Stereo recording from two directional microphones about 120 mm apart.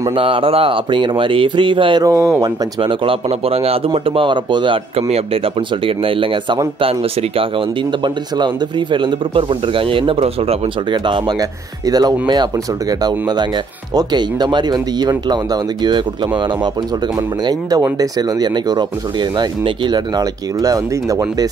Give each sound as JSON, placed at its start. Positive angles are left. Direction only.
{"t": 0.1, "sound": "speech", "side_deg": -50}
{"t": 2.0, "sound": "speech", "side_deg": -25}
{"t": 2.8, "sound": "speech", "side_deg": -45}
{"t": 10.9, "sound": "speech", "side_deg": -40}